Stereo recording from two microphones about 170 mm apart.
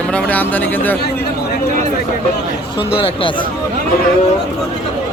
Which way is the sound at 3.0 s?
30° left (ahead or behind).